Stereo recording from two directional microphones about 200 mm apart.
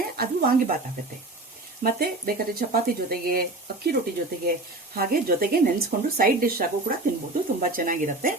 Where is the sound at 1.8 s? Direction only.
45° right (ahead or behind).